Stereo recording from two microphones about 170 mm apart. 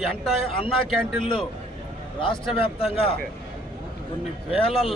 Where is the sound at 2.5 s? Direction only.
35° left (ahead or behind).